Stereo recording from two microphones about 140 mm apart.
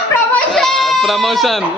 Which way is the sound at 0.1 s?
5° left (ahead or behind).